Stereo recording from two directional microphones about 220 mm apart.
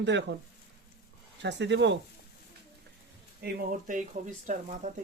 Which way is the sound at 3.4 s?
45° right (ahead or behind).